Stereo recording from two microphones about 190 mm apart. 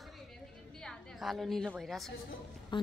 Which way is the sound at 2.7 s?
25° left (ahead or behind).